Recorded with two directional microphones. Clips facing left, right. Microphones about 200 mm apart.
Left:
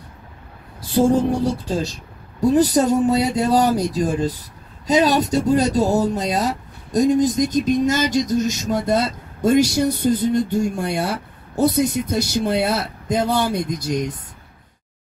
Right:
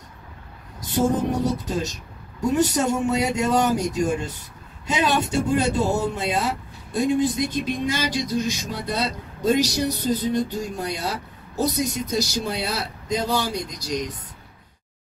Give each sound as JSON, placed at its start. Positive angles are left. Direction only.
{"t": 0.7, "sound": "speech", "side_deg": 30}